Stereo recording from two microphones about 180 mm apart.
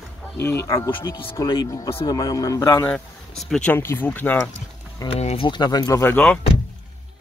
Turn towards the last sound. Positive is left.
turn(degrees=5)  # may be behind; listen again after turning